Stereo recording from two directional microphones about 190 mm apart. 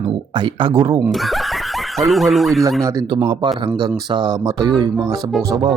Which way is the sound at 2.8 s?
20° right (ahead or behind).